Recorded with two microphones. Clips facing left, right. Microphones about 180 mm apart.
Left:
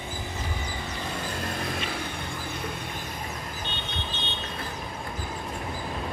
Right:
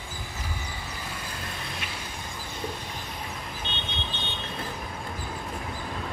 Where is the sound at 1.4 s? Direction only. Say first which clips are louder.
Left 6 dB; 55° left (ahead or behind).